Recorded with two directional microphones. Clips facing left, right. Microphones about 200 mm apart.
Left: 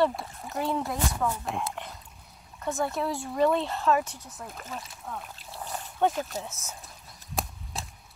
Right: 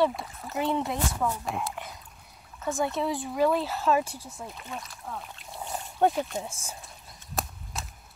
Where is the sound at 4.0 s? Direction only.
30° right (ahead or behind).